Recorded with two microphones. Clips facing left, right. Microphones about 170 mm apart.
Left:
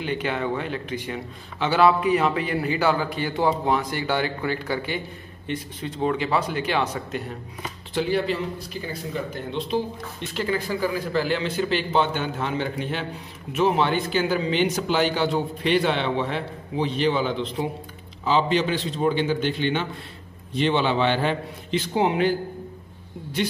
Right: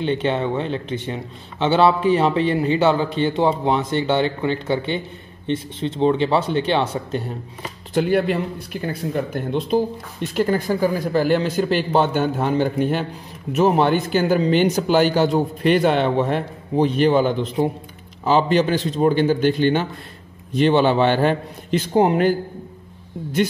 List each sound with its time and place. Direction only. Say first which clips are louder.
0.0 s a man's voice: right 5 dB; 25° right (ahead or behind)
7.9 s speech: right 5 dB; 55° right (ahead or behind)